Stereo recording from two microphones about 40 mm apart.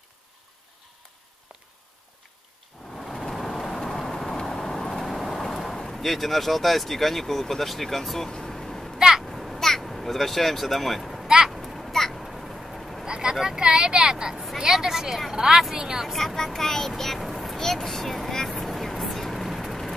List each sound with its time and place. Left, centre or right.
3.1 s vehicle: centre
5.8 s speech: centre
8.3 s a sound: centre
8.9 s a sound: centre
9.6 s speech: centre
11.2 s speech: centre
11.9 s a sound: centre
13.0 s vehicle: centre
13.4 s speech: centre
16.1 s speech: centre
17.2 s a sound: centre
17.6 s speech: centre
18.6 s vehicle: centre